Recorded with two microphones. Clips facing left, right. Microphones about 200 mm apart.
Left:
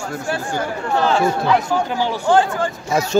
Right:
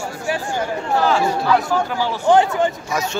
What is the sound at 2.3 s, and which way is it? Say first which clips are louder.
Speech: right 2 dB; 20° right (ahead or behind).